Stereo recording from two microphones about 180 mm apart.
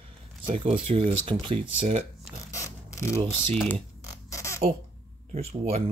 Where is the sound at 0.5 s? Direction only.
35° right (ahead or behind).